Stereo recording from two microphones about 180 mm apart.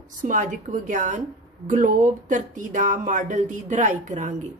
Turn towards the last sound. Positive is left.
turn(degrees=-45)  # may be behind; listen again after turning